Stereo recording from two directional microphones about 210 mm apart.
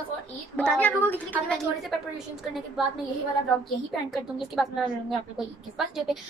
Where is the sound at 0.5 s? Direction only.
5° left (ahead or behind).